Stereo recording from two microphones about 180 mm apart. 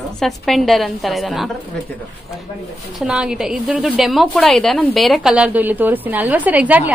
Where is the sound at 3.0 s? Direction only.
5° right (ahead or behind).